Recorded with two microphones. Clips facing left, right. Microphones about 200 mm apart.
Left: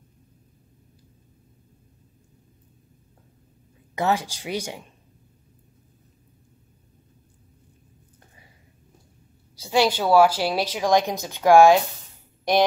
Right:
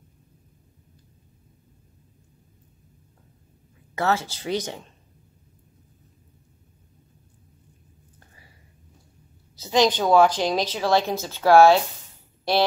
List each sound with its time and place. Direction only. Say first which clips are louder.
3.9 s speech: left 1 dB; 15° left (ahead or behind)
9.6 s speech: right 1 dB; 10° left (ahead or behind)